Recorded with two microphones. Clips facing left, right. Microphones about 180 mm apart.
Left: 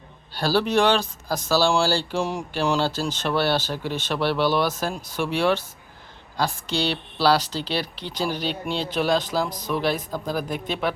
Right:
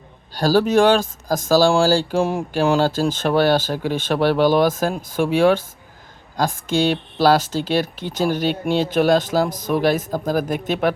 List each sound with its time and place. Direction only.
0.3 s speech: 45° right (ahead or behind)